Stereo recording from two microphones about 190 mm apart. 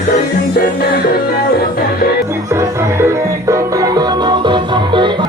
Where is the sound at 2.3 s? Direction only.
15° right (ahead or behind).